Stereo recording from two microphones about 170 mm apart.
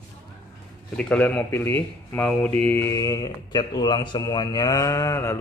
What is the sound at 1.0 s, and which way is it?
A man's voice, 10° left (ahead or behind).